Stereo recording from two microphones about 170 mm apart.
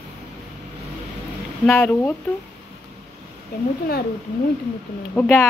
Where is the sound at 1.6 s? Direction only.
10° left (ahead or behind).